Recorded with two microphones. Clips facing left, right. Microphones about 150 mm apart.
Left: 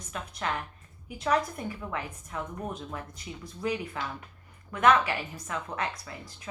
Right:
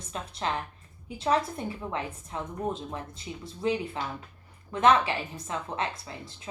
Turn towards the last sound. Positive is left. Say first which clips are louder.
# right 1 dB
turn(degrees=-25)  # may be behind; listen again after turning